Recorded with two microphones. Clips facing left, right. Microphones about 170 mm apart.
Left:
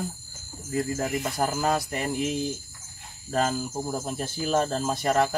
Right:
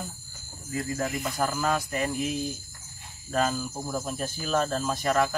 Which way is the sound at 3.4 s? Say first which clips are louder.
Left 1 dB; 35° left (ahead or behind).